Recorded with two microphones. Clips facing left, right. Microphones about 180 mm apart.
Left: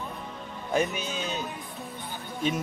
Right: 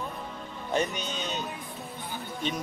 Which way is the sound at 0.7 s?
5° left (ahead or behind).